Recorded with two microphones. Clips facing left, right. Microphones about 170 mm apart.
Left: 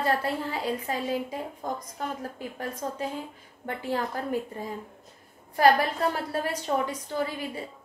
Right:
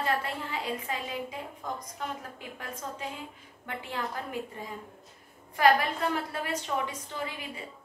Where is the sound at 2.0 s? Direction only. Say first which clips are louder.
Left 4 dB; 40° left (ahead or behind).